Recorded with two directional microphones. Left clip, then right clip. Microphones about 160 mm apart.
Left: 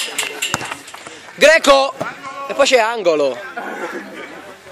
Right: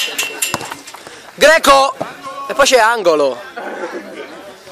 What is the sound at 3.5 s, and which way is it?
Chatter, 50° left (ahead or behind).